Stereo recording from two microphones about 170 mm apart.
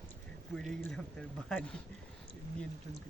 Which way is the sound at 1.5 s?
5° left (ahead or behind).